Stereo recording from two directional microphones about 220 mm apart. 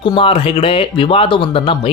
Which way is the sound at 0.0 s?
25° left (ahead or behind).